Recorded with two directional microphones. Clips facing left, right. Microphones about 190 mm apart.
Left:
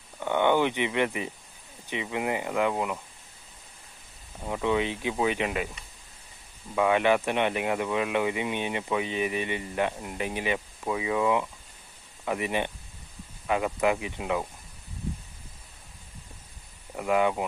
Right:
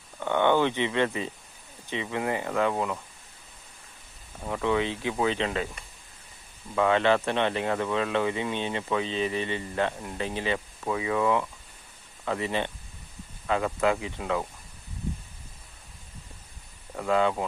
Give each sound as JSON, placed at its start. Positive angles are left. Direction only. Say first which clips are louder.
{"t": 0.2, "sound": "speech", "louder": "even", "side_deg": 15}
{"t": 4.4, "sound": "speech", "louder": "even", "side_deg": 15}
{"t": 6.7, "sound": "speech", "louder": "even", "side_deg": 15}
{"t": 16.9, "sound": "speech", "louder": "even", "side_deg": 15}